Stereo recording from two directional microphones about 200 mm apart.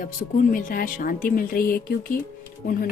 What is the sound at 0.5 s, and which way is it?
A woman's voice, 45° left (ahead or behind).